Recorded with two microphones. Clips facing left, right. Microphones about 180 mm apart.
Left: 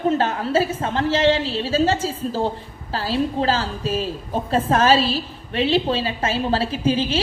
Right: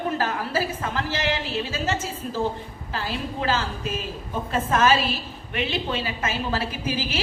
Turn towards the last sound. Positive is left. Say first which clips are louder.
# left 8 dB
turn(degrees=30)  # may be behind; listen again after turning